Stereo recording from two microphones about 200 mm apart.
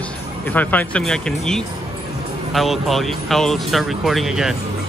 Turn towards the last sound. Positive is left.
turn(degrees=0)  # may be behind; listen again after turning